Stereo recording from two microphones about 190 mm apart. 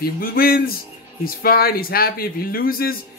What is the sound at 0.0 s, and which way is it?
Speech, 50° left (ahead or behind).